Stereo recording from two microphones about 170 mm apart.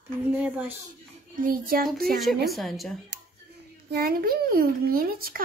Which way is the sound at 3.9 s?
65° right (ahead or behind).